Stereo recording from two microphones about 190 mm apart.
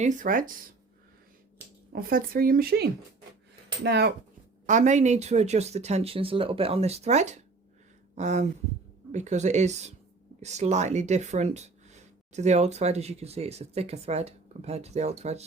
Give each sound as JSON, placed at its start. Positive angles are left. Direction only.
{"t": 0.0, "sound": "speech", "side_deg": -40}
{"t": 1.9, "sound": "speech", "side_deg": -50}
{"t": 3.8, "sound": "speech", "side_deg": -60}
{"t": 4.6, "sound": "speech", "side_deg": -40}